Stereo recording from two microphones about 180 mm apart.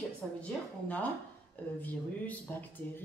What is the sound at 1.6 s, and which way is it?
Speech, 10° left (ahead or behind).